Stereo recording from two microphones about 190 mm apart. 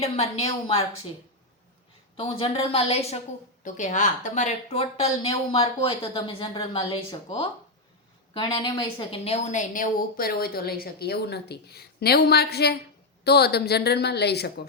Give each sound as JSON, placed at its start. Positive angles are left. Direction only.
{"t": 0.0, "sound": "a woman's voice", "side_deg": 35}
{"t": 2.1, "sound": "a woman's voice", "side_deg": 30}